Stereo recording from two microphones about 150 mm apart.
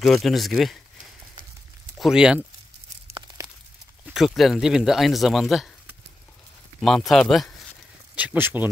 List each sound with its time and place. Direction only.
0.0 s speech: centre (ahead or behind)
2.0 s speech: 5° right (ahead or behind)
3.4 s a sound: 20° right (ahead or behind)
4.0 s speech: centre (ahead or behind)
8.2 s speech: 10° right (ahead or behind)